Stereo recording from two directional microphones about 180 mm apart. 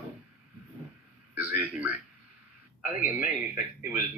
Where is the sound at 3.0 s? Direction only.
45° left (ahead or behind).